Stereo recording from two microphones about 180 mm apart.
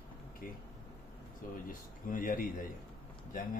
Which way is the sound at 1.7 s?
50° left (ahead or behind).